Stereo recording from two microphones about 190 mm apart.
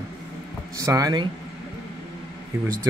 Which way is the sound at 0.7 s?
15° right (ahead or behind).